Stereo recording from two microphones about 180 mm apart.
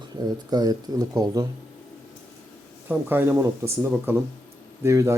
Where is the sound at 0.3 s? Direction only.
20° right (ahead or behind).